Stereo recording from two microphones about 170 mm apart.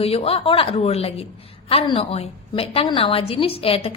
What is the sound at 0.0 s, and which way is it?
A woman's voice, 35° left (ahead or behind).